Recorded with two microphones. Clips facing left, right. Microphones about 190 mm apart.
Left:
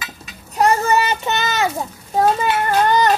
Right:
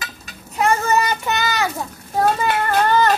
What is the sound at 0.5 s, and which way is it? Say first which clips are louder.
Child singing: left 2 dB; 30° left (ahead or behind).